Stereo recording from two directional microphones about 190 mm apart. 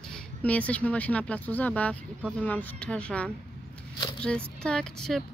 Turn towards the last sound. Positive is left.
turn(degrees=0)  # may be behind; listen again after turning